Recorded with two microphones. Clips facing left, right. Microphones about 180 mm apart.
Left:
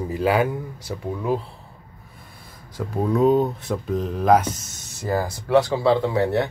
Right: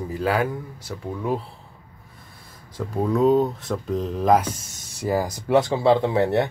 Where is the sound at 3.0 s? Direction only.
5° left (ahead or behind).